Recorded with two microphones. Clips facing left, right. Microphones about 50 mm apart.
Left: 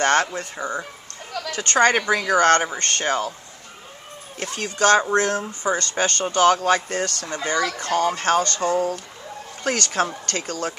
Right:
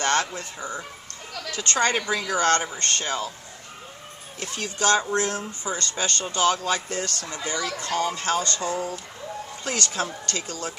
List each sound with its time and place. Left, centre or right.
0.0 s speech: left
4.4 s speech: left